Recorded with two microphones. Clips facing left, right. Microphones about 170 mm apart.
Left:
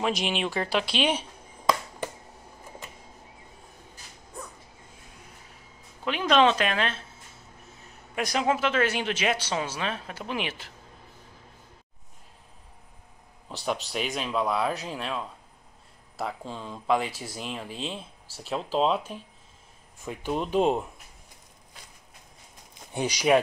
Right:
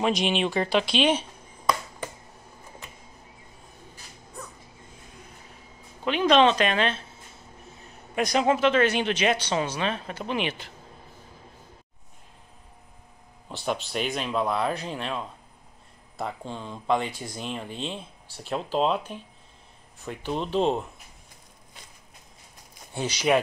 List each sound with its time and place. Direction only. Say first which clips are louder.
0.0 s speech: right 3 dB; 5° left (ahead or behind)
6.0 s speech: right 2 dB; centre (ahead or behind)
8.1 s speech: right 3 dB; 5° left (ahead or behind)
13.9 s speech: right 2 dB; centre (ahead or behind)
22.9 s speech: left 1 dB; 10° left (ahead or behind)